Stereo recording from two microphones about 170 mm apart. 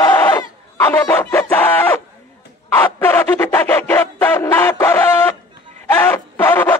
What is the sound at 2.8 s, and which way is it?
Music, 10° left (ahead or behind).